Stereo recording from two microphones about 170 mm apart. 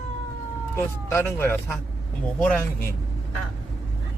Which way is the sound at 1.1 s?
15° left (ahead or behind).